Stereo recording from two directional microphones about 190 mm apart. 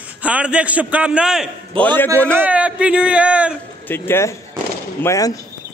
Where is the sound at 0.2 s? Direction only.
5° right (ahead or behind).